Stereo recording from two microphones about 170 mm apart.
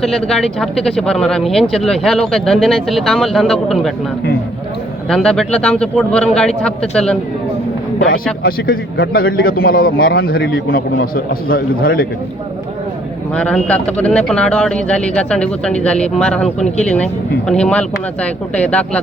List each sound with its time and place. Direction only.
0.0 s speech: centre (ahead or behind)
5.0 s speech: 5° left (ahead or behind)
8.4 s a man's voice: 60° left (ahead or behind)
13.3 s speech: 5° left (ahead or behind)